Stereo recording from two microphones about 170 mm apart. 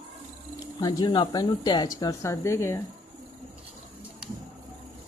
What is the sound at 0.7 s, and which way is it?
Speech, 25° left (ahead or behind).